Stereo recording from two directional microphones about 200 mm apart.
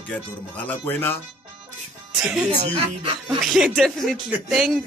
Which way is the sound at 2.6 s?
30° right (ahead or behind).